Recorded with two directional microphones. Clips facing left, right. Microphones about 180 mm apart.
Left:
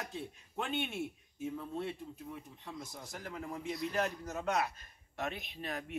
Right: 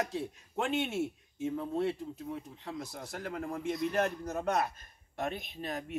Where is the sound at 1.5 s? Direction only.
45° right (ahead or behind).